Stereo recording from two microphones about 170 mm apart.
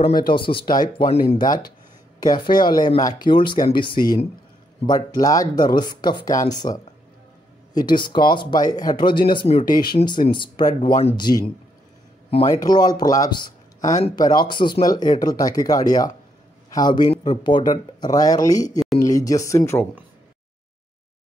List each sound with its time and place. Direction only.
0.1 s speech: 30° left (ahead or behind)